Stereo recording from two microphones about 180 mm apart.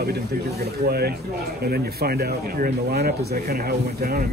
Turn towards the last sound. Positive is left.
turn(degrees=-60)  # may be behind; listen again after turning